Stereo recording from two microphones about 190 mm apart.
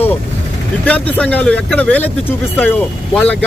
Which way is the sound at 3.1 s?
5° left (ahead or behind).